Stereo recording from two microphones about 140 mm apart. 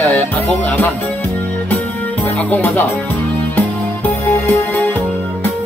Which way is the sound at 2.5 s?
15° left (ahead or behind).